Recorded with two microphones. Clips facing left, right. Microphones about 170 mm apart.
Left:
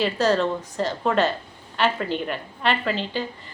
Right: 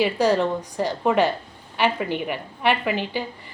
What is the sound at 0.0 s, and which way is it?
A woman's voice, 15° right (ahead or behind).